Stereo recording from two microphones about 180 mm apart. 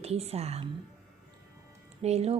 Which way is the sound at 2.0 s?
35° right (ahead or behind).